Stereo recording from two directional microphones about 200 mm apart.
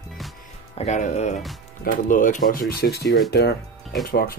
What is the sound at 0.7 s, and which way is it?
Speech, 35° left (ahead or behind).